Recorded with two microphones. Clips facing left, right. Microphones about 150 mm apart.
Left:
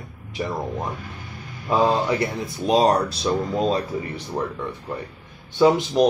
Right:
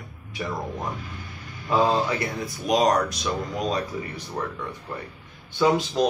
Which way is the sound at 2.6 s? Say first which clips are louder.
Left 3 dB; 30° left (ahead or behind).